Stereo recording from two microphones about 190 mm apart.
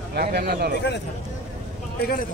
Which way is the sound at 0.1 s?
55° right (ahead or behind).